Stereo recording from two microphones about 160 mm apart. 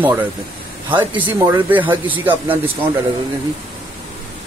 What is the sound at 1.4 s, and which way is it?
Speech, 15° right (ahead or behind).